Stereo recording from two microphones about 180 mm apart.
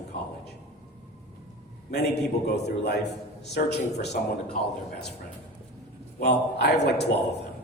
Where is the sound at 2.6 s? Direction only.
70° left (ahead or behind).